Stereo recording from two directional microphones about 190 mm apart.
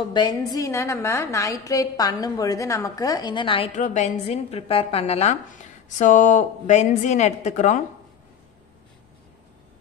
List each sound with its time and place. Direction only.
0.1 s a woman's voice: 20° left (ahead or behind)
3.7 s a woman's voice: 40° left (ahead or behind)